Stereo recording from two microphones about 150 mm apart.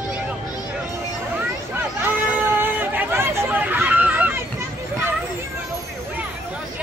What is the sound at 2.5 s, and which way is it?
Hubbub, 15° right (ahead or behind).